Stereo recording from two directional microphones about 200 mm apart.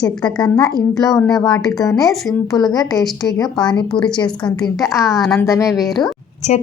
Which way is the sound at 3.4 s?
Centre (ahead or behind).